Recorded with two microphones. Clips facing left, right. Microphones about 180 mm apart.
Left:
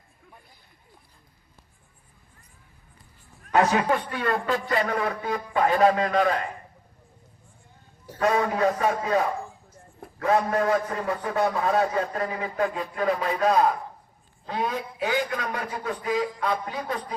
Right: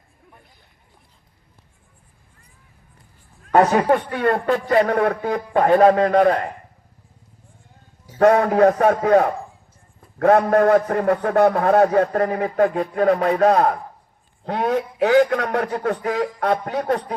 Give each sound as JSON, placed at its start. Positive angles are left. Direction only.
{"t": 3.5, "sound": "a man's voice", "side_deg": -45}
{"t": 8.2, "sound": "a man's voice", "side_deg": -60}